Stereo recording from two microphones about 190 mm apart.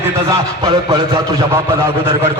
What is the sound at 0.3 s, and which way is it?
Speech, 20° right (ahead or behind).